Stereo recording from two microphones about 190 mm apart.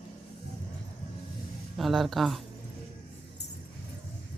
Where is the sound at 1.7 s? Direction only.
Centre (ahead or behind).